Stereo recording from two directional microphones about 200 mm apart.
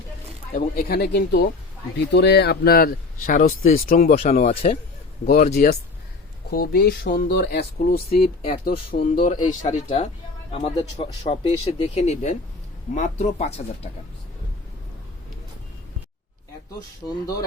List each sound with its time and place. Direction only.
0.5 s speech: 45° left (ahead or behind)
4.1 s speech: 30° left (ahead or behind)
5.2 s speech: 50° left (ahead or behind)
6.5 s speech: 50° left (ahead or behind); by 13.9 s 35° left (ahead or behind)